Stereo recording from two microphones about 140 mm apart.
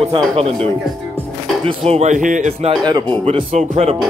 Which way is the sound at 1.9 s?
55° right (ahead or behind).